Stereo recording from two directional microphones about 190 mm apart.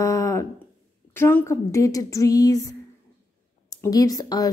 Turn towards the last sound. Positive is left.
turn(degrees=20)  # may be behind; listen again after turning